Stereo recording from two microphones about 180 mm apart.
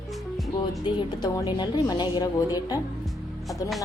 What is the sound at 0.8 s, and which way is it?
A woman's voice, 25° left (ahead or behind).